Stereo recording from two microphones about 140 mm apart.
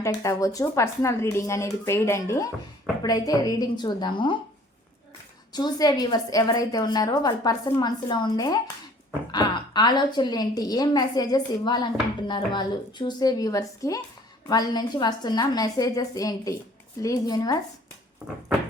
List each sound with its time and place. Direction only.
0.0 s a woman's voice: 20° left (ahead or behind)
5.5 s a woman's voice: 30° left (ahead or behind)
18.2 s a sound: 10° right (ahead or behind)